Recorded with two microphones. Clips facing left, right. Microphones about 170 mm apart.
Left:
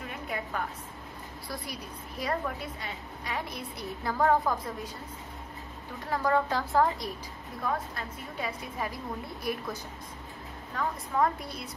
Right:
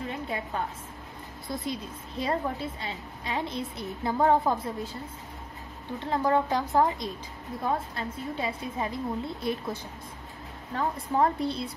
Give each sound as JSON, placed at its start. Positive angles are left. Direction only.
{"t": 0.1, "sound": "a sound", "side_deg": -25}
{"t": 1.5, "sound": "a woman's voice", "side_deg": -25}
{"t": 6.0, "sound": "a woman's voice", "side_deg": -20}